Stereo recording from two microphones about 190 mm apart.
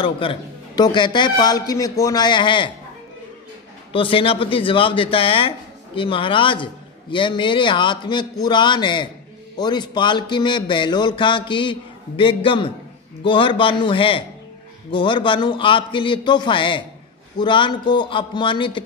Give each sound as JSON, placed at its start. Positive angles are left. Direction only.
{"t": 0.0, "sound": "a man's voice", "side_deg": 25}
{"t": 3.9, "sound": "a man's voice", "side_deg": 30}